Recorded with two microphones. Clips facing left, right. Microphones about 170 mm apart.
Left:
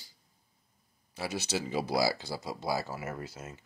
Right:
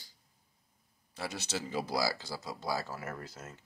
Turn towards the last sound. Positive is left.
turn(degrees=10)  # may be behind; listen again after turning